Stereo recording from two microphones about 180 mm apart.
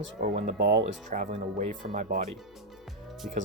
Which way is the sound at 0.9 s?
45° right (ahead or behind).